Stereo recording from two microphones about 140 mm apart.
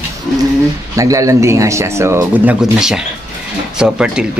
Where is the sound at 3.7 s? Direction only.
5° right (ahead or behind).